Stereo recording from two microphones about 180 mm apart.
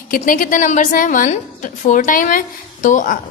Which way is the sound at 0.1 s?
50° left (ahead or behind).